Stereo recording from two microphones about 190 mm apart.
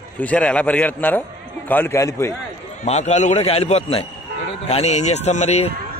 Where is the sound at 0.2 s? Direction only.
5° left (ahead or behind).